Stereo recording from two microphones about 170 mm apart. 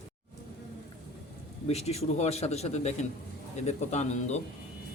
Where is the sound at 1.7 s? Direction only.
40° left (ahead or behind).